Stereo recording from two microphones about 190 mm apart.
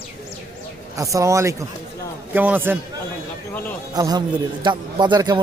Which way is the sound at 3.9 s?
20° right (ahead or behind).